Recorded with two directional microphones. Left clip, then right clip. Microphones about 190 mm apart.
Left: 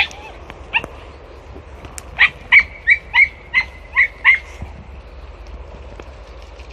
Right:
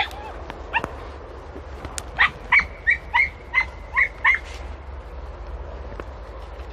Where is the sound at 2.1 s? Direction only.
Centre (ahead or behind).